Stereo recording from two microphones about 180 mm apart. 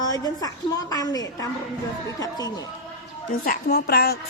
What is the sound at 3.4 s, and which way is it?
Speech, 65° left (ahead or behind).